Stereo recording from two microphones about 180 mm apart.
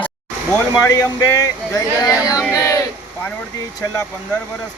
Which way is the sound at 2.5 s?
20° left (ahead or behind).